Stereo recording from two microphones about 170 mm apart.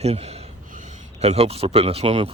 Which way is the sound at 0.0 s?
40° right (ahead or behind).